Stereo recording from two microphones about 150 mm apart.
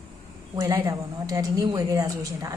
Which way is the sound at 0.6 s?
25° right (ahead or behind).